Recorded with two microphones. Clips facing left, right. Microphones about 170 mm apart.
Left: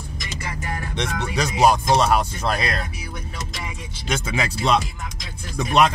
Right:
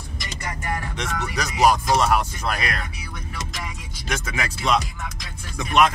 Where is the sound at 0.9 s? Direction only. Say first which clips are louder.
Left 3 dB; 30° left (ahead or behind).